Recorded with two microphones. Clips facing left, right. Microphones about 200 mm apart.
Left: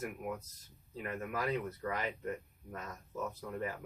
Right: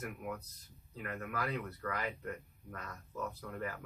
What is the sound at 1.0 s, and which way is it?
A man's voice, 20° left (ahead or behind).